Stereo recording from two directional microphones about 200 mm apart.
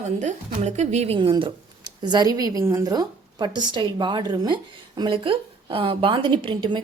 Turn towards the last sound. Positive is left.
turn(degrees=-25)  # may be behind; listen again after turning